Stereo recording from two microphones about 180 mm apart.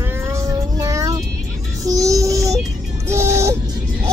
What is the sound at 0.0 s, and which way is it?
Music, 15° right (ahead or behind).